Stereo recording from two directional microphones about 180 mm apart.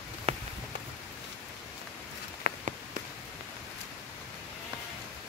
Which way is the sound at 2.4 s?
45° right (ahead or behind).